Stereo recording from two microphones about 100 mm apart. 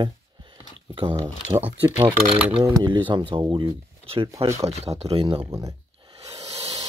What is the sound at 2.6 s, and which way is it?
Speech, 45° right (ahead or behind).